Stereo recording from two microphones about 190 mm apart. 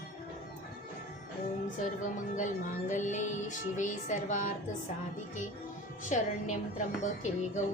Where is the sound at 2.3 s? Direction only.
40° left (ahead or behind).